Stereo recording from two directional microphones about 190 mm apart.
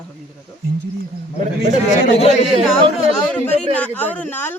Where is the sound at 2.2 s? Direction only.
35° left (ahead or behind).